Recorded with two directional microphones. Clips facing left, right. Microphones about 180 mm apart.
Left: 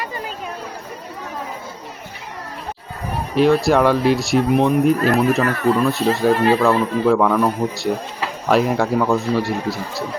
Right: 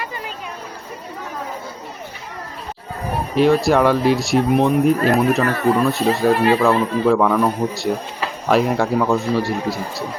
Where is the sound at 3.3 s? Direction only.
Centre (ahead or behind).